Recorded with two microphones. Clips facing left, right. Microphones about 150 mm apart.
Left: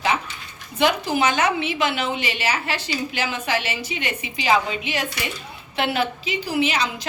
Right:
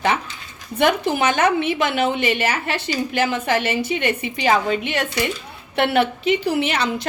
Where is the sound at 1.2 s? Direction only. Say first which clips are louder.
Right 3 dB; 55° right (ahead or behind).